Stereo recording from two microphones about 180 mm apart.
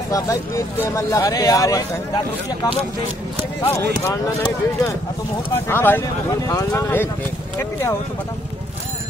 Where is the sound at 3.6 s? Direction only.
15° left (ahead or behind).